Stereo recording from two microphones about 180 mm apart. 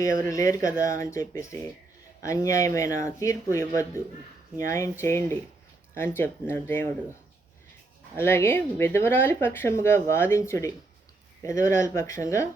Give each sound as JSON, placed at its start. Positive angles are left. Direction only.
{"t": 0.0, "sound": "speech", "side_deg": 15}
{"t": 8.1, "sound": "speech", "side_deg": 15}